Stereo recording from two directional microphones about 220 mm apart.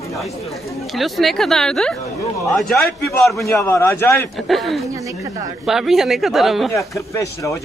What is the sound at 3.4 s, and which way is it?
Speech, 15° left (ahead or behind).